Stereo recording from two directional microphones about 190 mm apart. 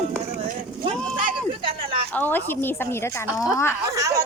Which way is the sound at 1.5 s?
25° right (ahead or behind).